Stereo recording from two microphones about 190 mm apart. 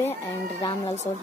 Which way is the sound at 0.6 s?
25° left (ahead or behind).